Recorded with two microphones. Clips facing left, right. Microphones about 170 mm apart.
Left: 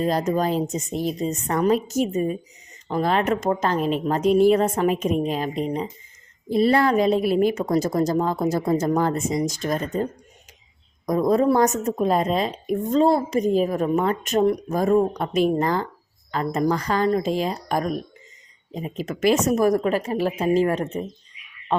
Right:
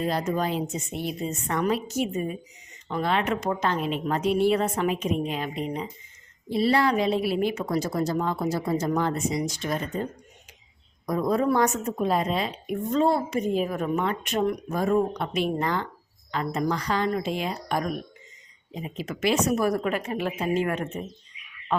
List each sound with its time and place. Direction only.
0.0 s a woman's voice: 40° left (ahead or behind)
6.5 s a woman's voice: 50° left (ahead or behind); by 21.8 s 30° left (ahead or behind)